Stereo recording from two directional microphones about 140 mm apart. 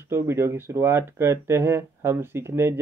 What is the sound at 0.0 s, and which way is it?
Speech, 20° right (ahead or behind).